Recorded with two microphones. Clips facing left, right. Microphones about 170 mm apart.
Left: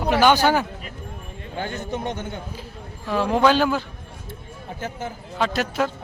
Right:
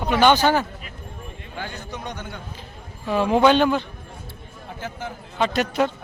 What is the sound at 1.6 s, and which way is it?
Speech, 50° left (ahead or behind).